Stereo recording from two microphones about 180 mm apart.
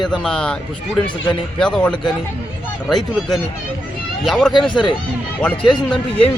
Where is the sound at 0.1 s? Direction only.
5° left (ahead or behind).